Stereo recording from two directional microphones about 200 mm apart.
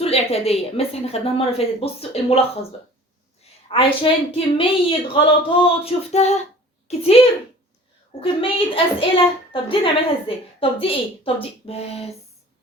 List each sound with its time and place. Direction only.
0.0 s a woman's voice: 30° left (ahead or behind)
3.7 s a woman's voice: 25° left (ahead or behind)
8.2 s a woman's voice: 25° left (ahead or behind)